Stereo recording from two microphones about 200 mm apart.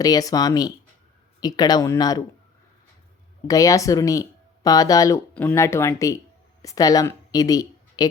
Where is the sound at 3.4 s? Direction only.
15° left (ahead or behind).